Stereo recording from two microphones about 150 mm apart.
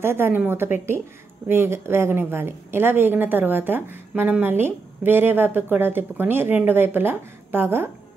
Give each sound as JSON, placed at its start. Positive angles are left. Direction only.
{"t": 0.0, "sound": "a woman's voice", "side_deg": -15}